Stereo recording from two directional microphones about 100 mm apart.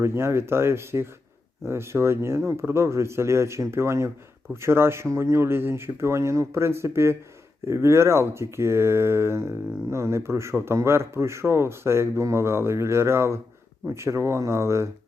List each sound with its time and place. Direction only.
0.0 s speech: 25° right (ahead or behind)